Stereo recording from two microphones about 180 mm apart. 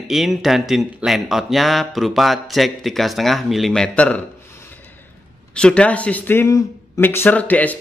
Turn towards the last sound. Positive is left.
turn(degrees=10)  # may be behind; listen again after turning